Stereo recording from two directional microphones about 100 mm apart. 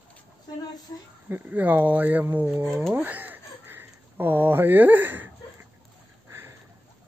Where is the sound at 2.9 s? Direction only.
20° right (ahead or behind).